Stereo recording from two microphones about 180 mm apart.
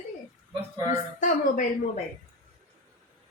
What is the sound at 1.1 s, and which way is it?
Speech, 45° left (ahead or behind).